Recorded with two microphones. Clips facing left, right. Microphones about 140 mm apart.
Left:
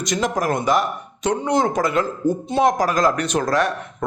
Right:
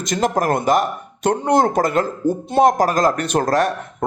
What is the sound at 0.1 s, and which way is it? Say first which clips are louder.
Speech: right 3 dB; 50° right (ahead or behind).